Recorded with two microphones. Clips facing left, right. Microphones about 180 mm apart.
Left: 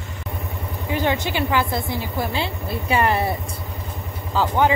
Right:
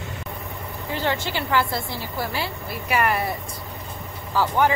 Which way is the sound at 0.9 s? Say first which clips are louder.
Left 3 dB; 15° left (ahead or behind).